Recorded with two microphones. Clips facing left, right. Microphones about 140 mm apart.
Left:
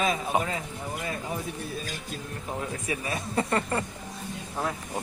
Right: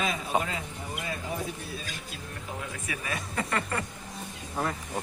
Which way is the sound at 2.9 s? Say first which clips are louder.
Left 4 dB; 35° left (ahead or behind).